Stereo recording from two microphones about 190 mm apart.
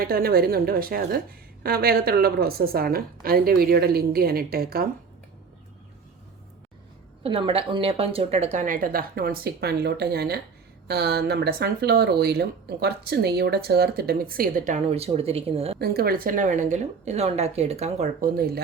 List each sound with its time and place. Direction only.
0.0 s a woman's voice: 50° right (ahead or behind)
7.2 s a woman's voice: 30° right (ahead or behind)
15.8 s a woman's voice: 55° right (ahead or behind); by 18.3 s 35° right (ahead or behind)
18.3 s a woman's voice: 55° right (ahead or behind)